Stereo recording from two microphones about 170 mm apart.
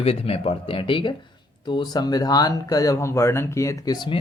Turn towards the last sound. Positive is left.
turn(degrees=25)  # may be behind; listen again after turning